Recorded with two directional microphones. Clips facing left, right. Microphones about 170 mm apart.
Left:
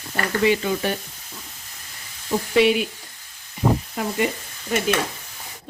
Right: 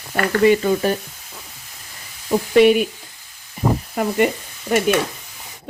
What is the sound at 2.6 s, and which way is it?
Speech, 50° right (ahead or behind).